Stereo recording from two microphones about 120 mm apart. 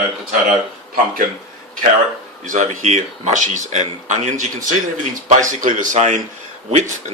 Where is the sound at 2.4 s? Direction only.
90° right.